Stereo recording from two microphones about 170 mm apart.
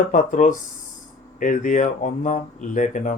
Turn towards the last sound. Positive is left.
turn(degrees=50)  # may be behind; listen again after turning